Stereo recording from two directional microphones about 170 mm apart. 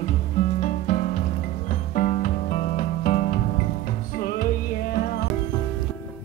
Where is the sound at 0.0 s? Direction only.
45° left (ahead or behind).